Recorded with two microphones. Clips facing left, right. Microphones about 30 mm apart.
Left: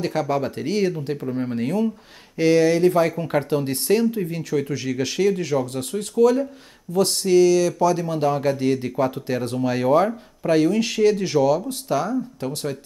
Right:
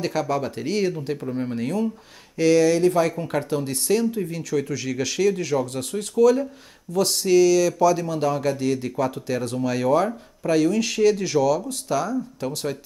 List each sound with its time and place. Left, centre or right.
0.0 s speech: centre
0.9 s speech: centre
2.3 s speech: left
3.3 s speech: left
4.6 s speech: centre